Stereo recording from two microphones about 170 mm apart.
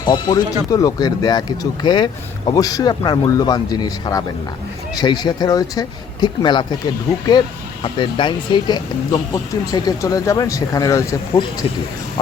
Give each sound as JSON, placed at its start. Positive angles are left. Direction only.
{"t": 0.0, "sound": "speech", "side_deg": 25}